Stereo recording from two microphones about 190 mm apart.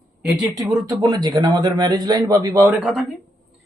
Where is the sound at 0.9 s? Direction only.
20° right (ahead or behind).